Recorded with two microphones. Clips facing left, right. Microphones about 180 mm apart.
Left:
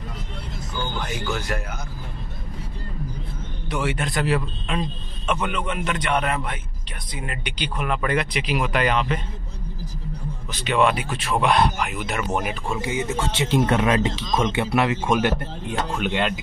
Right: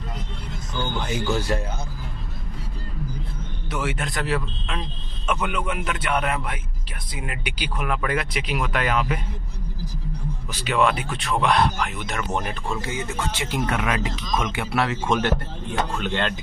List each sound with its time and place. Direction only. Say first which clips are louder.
1.0 s speech: right 3 dB; 25° right (ahead or behind)
3.7 s speech: left 3 dB; centre (ahead or behind)
10.5 s speech: left 1 dB; 5° right (ahead or behind); by 16.3 s 10° left (ahead or behind)